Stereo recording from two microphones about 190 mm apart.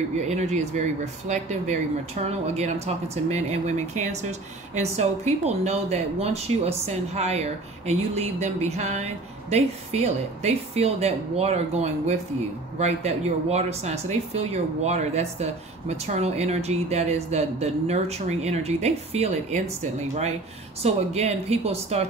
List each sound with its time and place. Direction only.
0.3 s speech: 35° right (ahead or behind)